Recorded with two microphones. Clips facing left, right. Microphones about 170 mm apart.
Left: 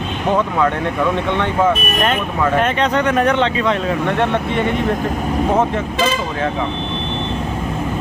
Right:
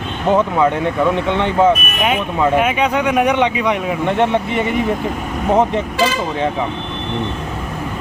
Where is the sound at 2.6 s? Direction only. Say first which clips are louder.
Even; 10° right (ahead or behind).